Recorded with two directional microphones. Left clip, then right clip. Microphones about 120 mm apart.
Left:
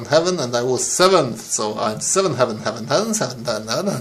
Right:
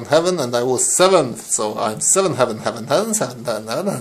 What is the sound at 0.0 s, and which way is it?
Speech, 45° right (ahead or behind).